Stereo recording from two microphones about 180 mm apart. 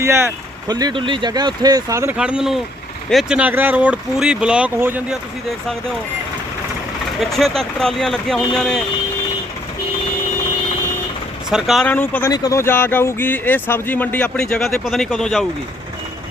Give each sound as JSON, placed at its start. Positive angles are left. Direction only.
{"t": 0.0, "sound": "speech", "side_deg": -15}
{"t": 2.1, "sound": "speech", "side_deg": -5}
{"t": 7.2, "sound": "speech", "side_deg": 0}
{"t": 11.5, "sound": "speech", "side_deg": 0}
{"t": 12.3, "sound": "speech", "side_deg": 20}